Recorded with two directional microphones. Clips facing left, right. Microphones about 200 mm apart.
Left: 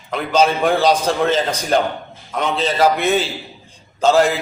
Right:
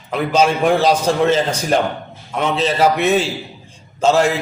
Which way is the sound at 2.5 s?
Centre (ahead or behind).